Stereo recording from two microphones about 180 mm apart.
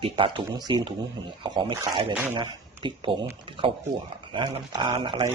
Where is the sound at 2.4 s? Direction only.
25° right (ahead or behind).